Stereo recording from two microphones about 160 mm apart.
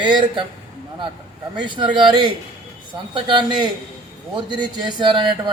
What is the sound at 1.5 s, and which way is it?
Speech, 30° right (ahead or behind).